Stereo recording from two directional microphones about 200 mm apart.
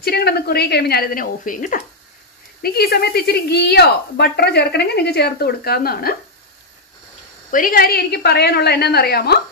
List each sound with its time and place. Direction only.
0.0 s a woman's voice: 50° left (ahead or behind)
7.5 s a woman's voice: 45° left (ahead or behind)